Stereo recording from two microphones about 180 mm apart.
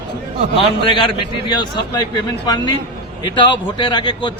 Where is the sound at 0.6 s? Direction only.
25° left (ahead or behind).